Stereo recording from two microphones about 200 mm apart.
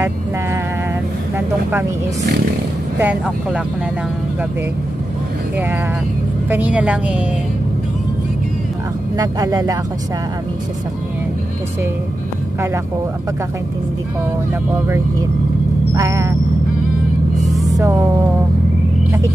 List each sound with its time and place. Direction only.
3.0 s a woman's voice: 10° right (ahead or behind)
6.5 s a woman's voice: 5° right (ahead or behind)
9.1 s speech: 20° right (ahead or behind)
15.9 s music: 15° right (ahead or behind)
17.5 s music: centre (ahead or behind)